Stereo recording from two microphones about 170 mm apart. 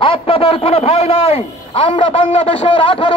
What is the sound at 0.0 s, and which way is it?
A man's voice, 30° left (ahead or behind).